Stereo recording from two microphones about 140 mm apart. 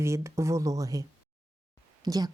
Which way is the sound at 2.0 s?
25° right (ahead or behind).